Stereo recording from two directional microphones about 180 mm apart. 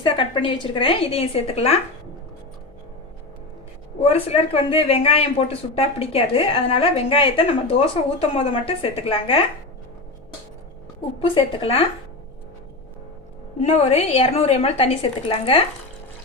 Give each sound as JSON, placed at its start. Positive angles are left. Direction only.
{"t": 0.0, "sound": "speech", "side_deg": 25}
{"t": 4.0, "sound": "speech", "side_deg": 35}
{"t": 11.2, "sound": "speech", "side_deg": 30}
{"t": 13.6, "sound": "speech", "side_deg": 35}